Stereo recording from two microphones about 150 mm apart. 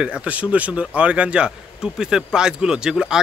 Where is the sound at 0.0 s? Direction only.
10° right (ahead or behind).